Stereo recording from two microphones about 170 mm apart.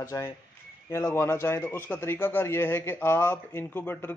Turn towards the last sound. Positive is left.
turn(degrees=10)  # may be behind; listen again after turning